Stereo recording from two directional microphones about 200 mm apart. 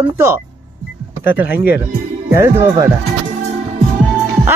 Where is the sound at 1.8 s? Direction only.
15° right (ahead or behind).